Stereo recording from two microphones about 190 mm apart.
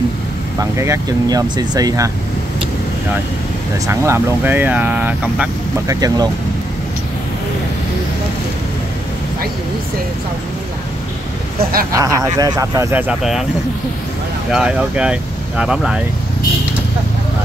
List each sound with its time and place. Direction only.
0.6 s speech: 15° right (ahead or behind)
3.8 s speech: 15° right (ahead or behind)
5.9 s speech: 20° right (ahead or behind)
11.9 s speech: 15° right (ahead or behind)
14.5 s speech: 5° right (ahead or behind)